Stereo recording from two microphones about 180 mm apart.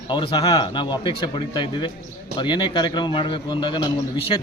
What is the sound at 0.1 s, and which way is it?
Speech, 30° left (ahead or behind).